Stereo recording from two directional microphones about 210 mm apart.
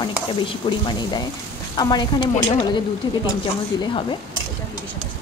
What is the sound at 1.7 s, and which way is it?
Speech, 20° left (ahead or behind).